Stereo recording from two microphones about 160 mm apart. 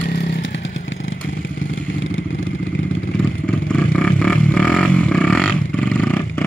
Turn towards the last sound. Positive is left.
turn(degrees=10)  # may be behind; listen again after turning